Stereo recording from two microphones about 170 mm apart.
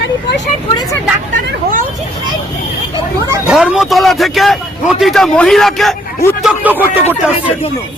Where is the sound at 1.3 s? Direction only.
50° right (ahead or behind).